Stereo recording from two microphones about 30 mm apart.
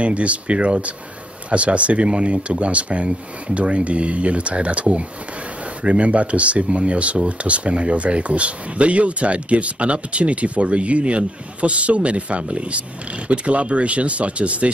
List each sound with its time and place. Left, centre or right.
0.0 s speech: right